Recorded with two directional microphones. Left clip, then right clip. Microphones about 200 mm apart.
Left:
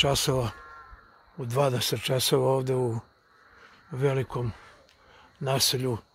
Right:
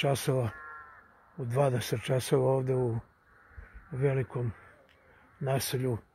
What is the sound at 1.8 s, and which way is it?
Speech, 15° left (ahead or behind).